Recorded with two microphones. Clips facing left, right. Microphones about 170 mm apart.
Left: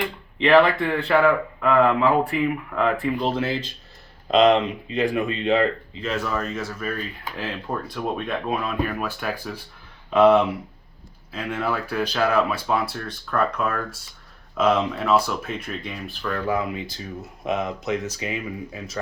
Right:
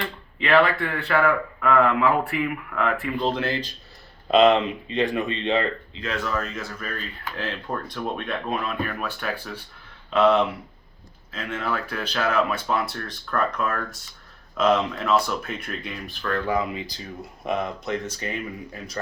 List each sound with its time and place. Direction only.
0.0 s speech: 15° left (ahead or behind)
3.2 s speech: 5° left (ahead or behind)